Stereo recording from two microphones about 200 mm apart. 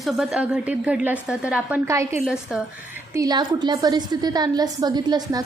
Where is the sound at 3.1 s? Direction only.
20° right (ahead or behind).